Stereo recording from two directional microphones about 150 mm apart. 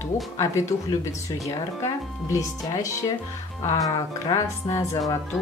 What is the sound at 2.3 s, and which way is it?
Speech, 20° left (ahead or behind).